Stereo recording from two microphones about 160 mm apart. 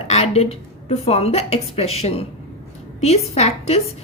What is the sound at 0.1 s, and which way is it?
A woman's voice, 40° left (ahead or behind).